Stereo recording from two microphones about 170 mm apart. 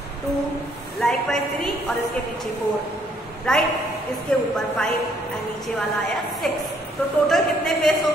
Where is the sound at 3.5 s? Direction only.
5° left (ahead or behind).